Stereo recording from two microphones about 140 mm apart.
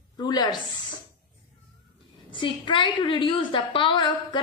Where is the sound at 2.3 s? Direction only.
35° left (ahead or behind).